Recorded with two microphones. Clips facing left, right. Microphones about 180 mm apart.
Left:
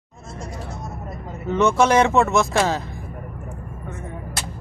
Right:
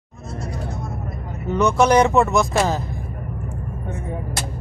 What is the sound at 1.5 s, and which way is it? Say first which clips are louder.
Speech: right 1 dB; centre (ahead or behind).